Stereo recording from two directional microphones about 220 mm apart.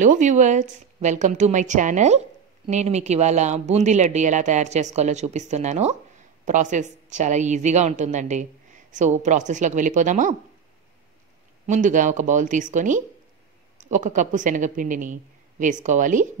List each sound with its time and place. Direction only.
0.0 s a woman's voice: 35° right (ahead or behind)
11.6 s a woman's voice: 35° right (ahead or behind)